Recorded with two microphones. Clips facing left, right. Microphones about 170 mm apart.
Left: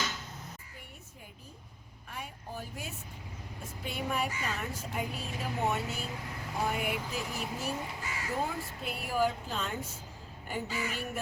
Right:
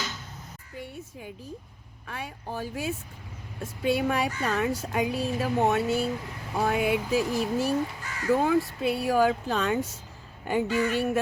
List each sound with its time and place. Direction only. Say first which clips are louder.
2.0 s speech: right 7 dB; 90° right